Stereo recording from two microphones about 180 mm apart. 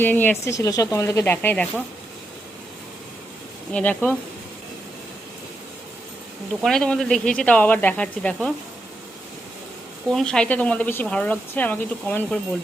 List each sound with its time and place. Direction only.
0.0 s speech: 10° left (ahead or behind)
3.7 s speech: 5° left (ahead or behind)
6.5 s speech: 5° left (ahead or behind)
10.1 s speech: 5° left (ahead or behind)